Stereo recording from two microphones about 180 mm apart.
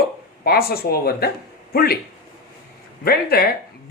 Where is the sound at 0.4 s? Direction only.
60° left (ahead or behind).